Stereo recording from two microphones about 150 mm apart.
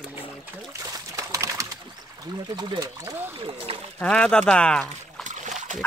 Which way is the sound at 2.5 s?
25° right (ahead or behind).